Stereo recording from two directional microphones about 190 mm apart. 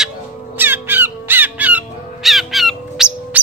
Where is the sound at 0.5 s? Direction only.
10° right (ahead or behind).